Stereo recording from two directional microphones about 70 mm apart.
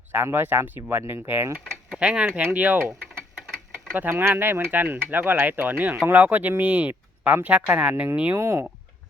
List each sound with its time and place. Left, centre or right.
0.1 s speech: right
2.0 s speech: centre
3.9 s speech: right
8.4 s speech: right